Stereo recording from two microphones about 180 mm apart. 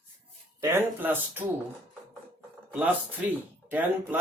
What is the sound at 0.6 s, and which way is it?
Speech, 15° right (ahead or behind).